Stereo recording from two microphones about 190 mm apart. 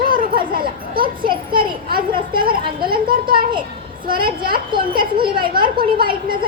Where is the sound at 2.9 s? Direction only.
50° right (ahead or behind).